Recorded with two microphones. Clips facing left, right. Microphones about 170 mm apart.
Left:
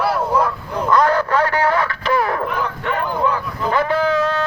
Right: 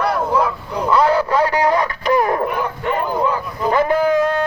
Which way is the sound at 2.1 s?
20° right (ahead or behind).